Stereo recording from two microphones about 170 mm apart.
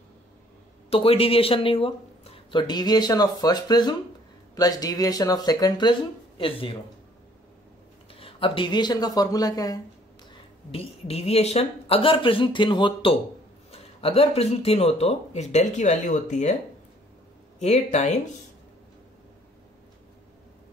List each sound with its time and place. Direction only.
0.8 s speech: 35° left (ahead or behind)
8.1 s speech: 35° left (ahead or behind)
10.7 s speech: 35° left (ahead or behind)
17.6 s speech: 40° left (ahead or behind)